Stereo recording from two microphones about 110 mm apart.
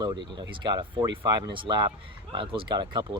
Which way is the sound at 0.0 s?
40° right (ahead or behind).